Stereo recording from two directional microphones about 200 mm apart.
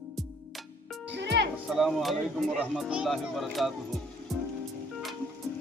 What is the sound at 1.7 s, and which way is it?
Speech, centre (ahead or behind).